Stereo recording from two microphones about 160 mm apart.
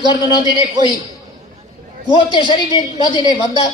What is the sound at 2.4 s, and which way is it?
A man's voice, 25° left (ahead or behind).